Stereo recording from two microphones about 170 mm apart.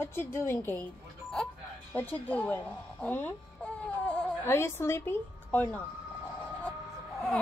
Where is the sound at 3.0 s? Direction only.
10° left (ahead or behind).